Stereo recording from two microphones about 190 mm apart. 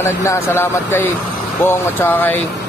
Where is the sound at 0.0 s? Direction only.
15° left (ahead or behind).